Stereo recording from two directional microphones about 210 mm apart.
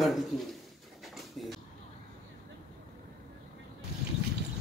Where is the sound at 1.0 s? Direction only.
Centre (ahead or behind).